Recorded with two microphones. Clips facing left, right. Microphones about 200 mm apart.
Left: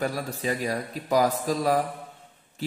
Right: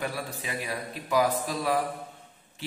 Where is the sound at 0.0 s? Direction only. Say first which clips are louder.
Left 5 dB; 40° left (ahead or behind).